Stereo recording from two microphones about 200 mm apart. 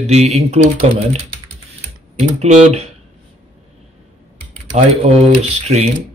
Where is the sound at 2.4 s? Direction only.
30° right (ahead or behind).